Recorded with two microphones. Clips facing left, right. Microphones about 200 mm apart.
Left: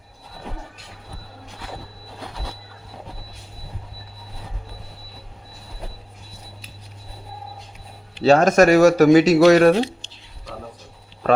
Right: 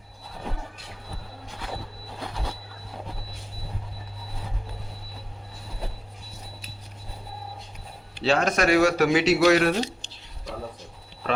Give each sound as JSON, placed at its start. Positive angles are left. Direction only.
{"t": 8.2, "sound": "speech", "side_deg": 45}